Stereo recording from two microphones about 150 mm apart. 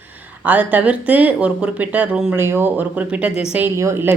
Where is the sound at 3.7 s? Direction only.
15° right (ahead or behind).